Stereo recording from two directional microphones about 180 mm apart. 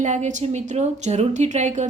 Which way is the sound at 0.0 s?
40° right (ahead or behind).